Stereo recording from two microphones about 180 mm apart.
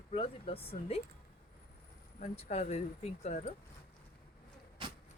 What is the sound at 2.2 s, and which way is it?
Speech, 35° left (ahead or behind).